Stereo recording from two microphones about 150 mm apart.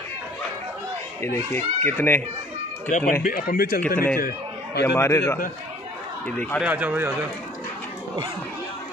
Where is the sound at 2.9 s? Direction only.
55° left (ahead or behind).